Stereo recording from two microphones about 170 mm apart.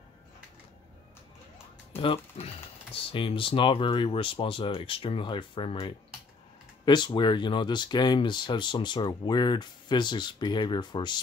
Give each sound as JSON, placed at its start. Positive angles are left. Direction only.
{"t": 2.0, "sound": "speech", "side_deg": 35}